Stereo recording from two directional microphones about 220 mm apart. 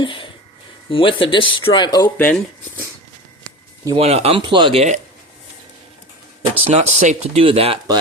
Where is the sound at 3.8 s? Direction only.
25° right (ahead or behind).